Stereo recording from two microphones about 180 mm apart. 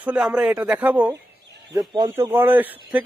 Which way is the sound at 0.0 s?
5° right (ahead or behind).